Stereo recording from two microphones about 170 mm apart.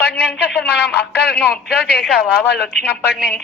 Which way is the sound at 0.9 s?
70° left (ahead or behind).